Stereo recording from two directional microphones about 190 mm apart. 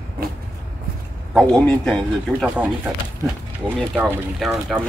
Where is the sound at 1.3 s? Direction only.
Centre (ahead or behind).